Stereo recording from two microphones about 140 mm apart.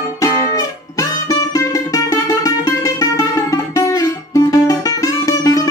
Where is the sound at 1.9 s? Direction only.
25° left (ahead or behind).